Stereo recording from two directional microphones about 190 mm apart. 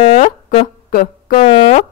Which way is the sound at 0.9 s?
45° left (ahead or behind).